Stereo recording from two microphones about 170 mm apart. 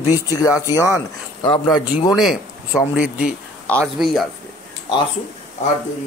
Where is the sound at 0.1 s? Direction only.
20° left (ahead or behind).